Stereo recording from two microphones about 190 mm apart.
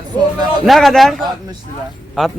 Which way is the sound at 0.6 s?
Centre (ahead or behind).